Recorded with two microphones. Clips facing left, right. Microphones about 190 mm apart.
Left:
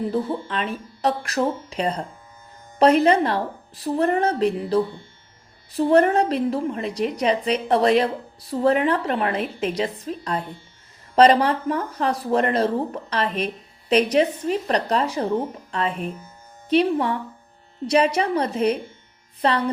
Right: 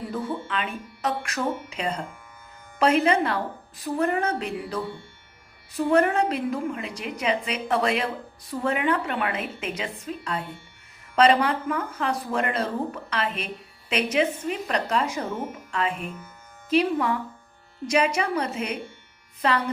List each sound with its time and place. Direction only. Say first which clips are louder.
0.1 s a woman's voice: left 5 dB; 35° left (ahead or behind)